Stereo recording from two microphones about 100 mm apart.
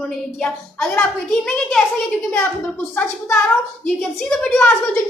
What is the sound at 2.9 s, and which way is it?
Speech, 15° left (ahead or behind).